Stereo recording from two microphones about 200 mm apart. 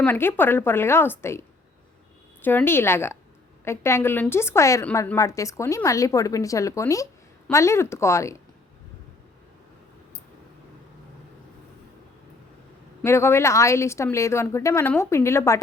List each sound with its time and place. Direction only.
0.0 s a woman's voice: 10° left (ahead or behind)
13.0 s a woman's voice: 10° left (ahead or behind)